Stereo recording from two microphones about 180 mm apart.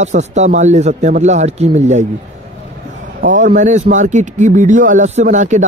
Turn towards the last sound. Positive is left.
turn(degrees=-45)  # may be behind; listen again after turning